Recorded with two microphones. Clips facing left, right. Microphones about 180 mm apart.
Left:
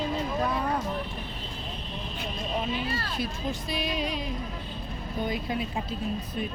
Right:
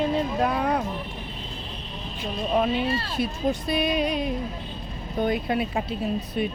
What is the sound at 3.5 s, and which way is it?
Music, 60° right (ahead or behind).